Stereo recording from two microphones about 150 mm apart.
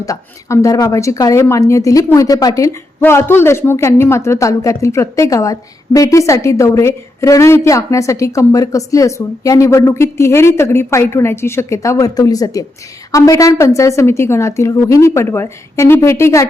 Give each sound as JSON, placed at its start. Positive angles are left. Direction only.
{"t": 0.0, "sound": "speech", "side_deg": 20}